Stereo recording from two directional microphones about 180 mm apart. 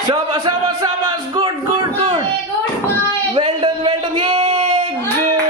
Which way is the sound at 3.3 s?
30° right (ahead or behind).